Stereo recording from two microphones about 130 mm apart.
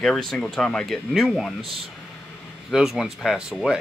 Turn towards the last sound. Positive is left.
turn(degrees=-5)  # may be behind; listen again after turning